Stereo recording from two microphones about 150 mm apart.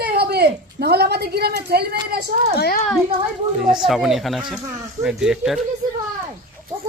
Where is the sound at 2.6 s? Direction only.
90° left.